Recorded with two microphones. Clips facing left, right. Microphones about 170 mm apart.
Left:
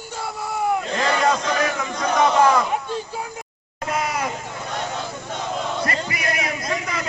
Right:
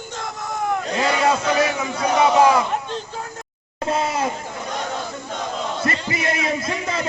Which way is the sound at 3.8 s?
30° right (ahead or behind).